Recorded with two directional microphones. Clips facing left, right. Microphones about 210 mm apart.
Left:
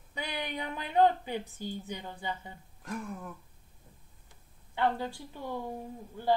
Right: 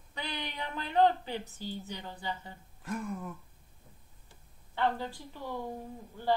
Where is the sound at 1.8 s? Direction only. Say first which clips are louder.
Left 1 dB; 15° left (ahead or behind).